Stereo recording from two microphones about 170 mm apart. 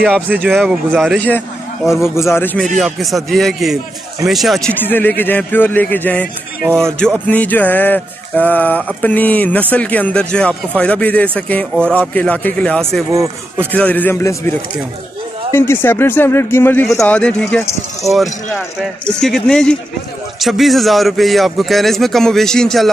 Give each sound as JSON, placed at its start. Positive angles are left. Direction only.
{"t": 0.5, "sound": "speech", "side_deg": 0}
{"t": 2.1, "sound": "a man's voice", "side_deg": 15}
{"t": 13.1, "sound": "speech", "side_deg": -15}
{"t": 13.7, "sound": "a man's voice", "side_deg": 10}
{"t": 15.5, "sound": "a man's voice", "side_deg": 15}